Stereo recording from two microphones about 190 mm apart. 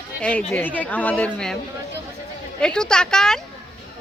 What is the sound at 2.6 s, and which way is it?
Speech, 5° left (ahead or behind).